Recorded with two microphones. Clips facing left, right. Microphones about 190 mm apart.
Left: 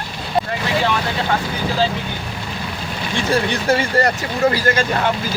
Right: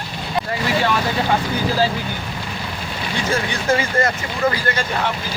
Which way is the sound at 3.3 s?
35° left (ahead or behind).